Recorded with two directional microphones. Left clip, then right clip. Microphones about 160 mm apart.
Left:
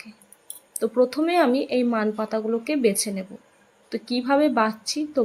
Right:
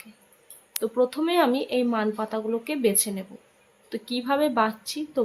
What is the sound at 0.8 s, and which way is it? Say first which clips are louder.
A woman's voice: left 3 dB; 20° left (ahead or behind).